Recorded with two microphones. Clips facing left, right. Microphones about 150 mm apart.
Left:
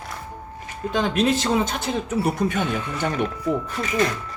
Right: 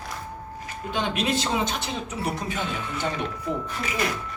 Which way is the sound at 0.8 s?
30° left (ahead or behind).